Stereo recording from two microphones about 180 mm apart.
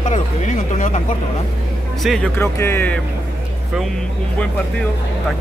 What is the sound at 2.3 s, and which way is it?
Speech, 15° left (ahead or behind).